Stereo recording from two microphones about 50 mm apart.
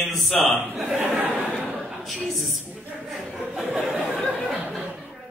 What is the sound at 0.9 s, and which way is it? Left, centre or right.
Speech, right.